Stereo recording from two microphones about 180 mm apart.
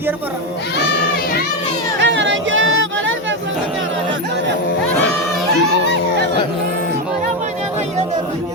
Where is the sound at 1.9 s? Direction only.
85° right.